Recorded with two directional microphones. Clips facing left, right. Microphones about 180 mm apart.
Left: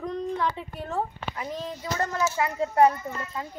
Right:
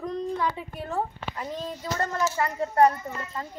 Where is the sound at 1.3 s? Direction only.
5° left (ahead or behind).